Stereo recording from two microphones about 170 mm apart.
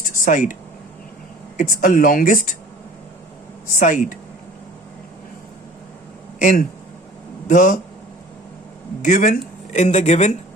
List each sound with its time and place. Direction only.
0.1 s a sound: 50° left (ahead or behind)
1.5 s speech: 50° left (ahead or behind)
3.8 s speech: 50° left (ahead or behind)
6.4 s speech: 55° left (ahead or behind)
9.0 s speech: 50° left (ahead or behind)